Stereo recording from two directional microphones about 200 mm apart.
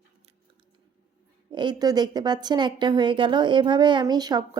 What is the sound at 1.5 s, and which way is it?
A woman's voice, 20° right (ahead or behind).